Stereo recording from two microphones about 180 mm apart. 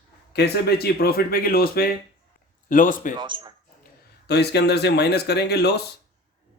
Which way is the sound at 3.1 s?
25° right (ahead or behind).